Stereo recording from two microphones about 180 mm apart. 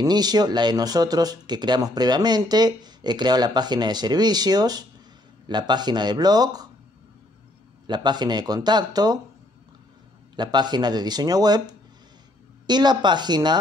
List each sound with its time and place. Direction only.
0.0 s speech: 20° right (ahead or behind)
7.8 s speech: 25° right (ahead or behind)
10.3 s speech: 25° right (ahead or behind)